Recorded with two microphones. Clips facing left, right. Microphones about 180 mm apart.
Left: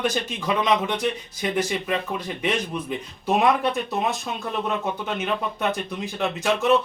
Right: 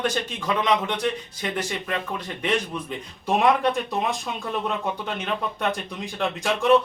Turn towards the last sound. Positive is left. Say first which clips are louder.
# even
turn(degrees=5)  # may be behind; listen again after turning